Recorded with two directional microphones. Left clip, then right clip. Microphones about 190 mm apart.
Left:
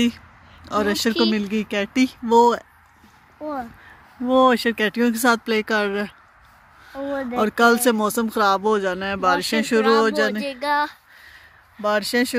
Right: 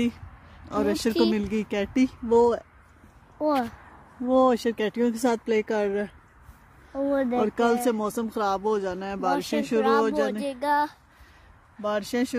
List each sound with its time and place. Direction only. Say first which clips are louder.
0.7 s speech: left 5 dB; 5° right (ahead or behind)
3.3 s speech: right 4 dB; 60° right (ahead or behind)
4.3 s speech: left 5 dB; centre (ahead or behind)
7.3 s speech: left 11 dB; centre (ahead or behind)
10.4 s female singing: left 3 dB; 25° right (ahead or behind)
11.8 s speech: left 7 dB; 5° left (ahead or behind)